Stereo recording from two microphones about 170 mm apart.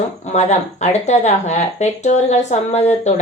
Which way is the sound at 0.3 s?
40° left (ahead or behind).